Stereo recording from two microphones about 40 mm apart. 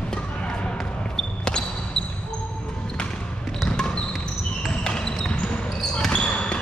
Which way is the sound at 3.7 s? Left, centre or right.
Left.